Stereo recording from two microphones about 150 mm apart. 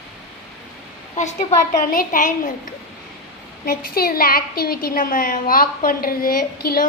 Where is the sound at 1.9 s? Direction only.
65° left (ahead or behind).